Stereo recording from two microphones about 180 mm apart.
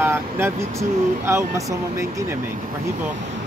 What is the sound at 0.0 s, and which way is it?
Speech, 15° right (ahead or behind).